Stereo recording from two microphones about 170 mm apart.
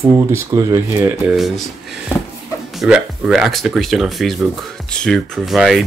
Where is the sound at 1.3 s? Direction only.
Centre (ahead or behind).